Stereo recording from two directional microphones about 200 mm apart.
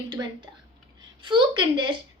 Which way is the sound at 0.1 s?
20° right (ahead or behind).